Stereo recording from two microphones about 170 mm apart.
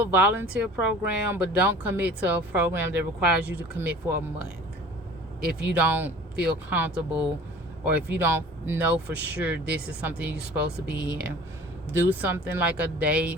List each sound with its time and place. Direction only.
0.0 s speech: 10° right (ahead or behind)
5.5 s speech: 10° right (ahead or behind)